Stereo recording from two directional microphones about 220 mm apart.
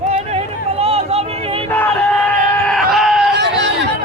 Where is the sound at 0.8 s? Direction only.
25° right (ahead or behind).